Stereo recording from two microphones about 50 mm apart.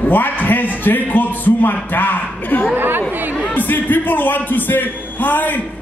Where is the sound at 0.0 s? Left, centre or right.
Left.